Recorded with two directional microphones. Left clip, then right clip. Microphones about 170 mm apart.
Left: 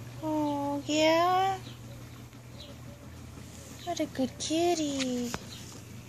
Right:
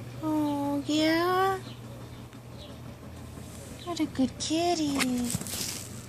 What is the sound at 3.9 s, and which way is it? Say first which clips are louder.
Speech: right 3 dB; 25° left (ahead or behind).